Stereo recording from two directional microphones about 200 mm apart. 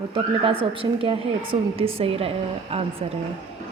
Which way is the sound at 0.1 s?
25° right (ahead or behind).